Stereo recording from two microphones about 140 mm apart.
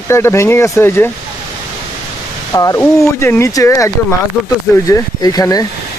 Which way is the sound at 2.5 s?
25° left (ahead or behind).